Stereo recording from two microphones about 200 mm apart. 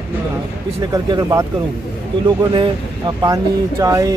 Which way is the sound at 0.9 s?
20° right (ahead or behind).